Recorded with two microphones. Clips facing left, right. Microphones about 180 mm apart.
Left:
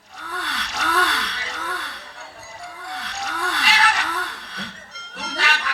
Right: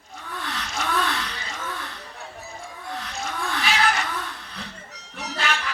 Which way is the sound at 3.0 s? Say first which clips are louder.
Left 2 dB; 70° left (ahead or behind).